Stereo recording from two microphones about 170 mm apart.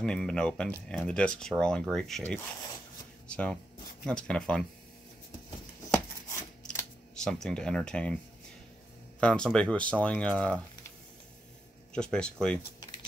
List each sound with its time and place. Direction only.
0.0 s speech: 5° left (ahead or behind)
5.9 s a sound: 15° left (ahead or behind)
7.2 s speech: 5° left (ahead or behind)
9.2 s speech: 5° left (ahead or behind)
11.9 s speech: 5° left (ahead or behind)